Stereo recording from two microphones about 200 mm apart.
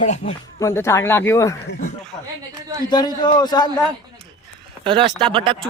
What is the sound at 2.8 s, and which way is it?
Speech, 20° left (ahead or behind).